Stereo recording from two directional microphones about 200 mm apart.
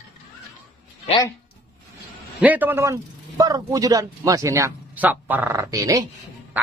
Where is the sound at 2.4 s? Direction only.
10° right (ahead or behind).